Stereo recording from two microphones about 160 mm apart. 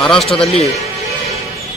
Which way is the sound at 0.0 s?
5° left (ahead or behind).